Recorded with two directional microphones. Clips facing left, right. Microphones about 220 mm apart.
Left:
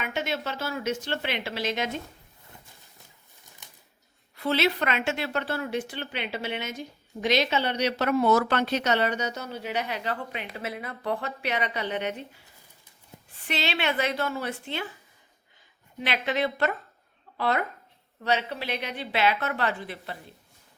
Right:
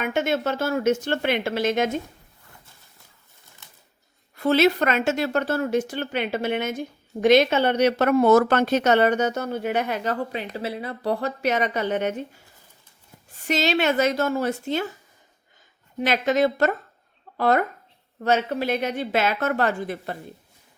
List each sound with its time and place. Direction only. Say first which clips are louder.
0.0 s speech: right 7 dB; 50° right (ahead or behind)
4.4 s speech: right 7 dB; 45° right (ahead or behind)
16.0 s speech: right 7 dB; 45° right (ahead or behind)